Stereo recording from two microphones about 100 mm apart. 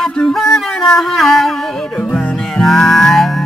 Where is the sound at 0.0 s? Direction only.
5° left (ahead or behind).